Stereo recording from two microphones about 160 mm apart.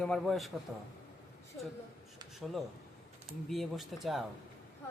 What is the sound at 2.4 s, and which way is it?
Speech, centre (ahead or behind).